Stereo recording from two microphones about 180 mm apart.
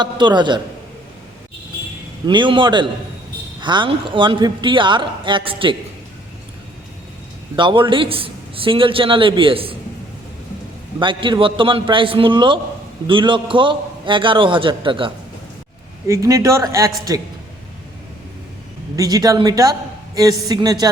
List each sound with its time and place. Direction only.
0.0 s a man's voice: 25° right (ahead or behind)
2.2 s a man's voice: 25° right (ahead or behind)
7.5 s a man's voice: 25° right (ahead or behind)
11.0 s a man's voice: 25° right (ahead or behind)
16.0 s speech: 15° right (ahead or behind)
18.9 s a man's voice: 20° right (ahead or behind)